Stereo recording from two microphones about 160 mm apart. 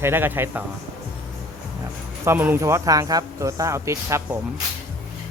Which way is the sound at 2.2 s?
15° right (ahead or behind).